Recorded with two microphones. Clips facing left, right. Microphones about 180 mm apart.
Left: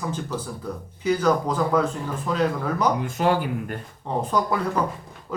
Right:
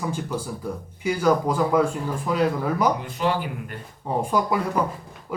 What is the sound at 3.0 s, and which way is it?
Speech, 45° left (ahead or behind).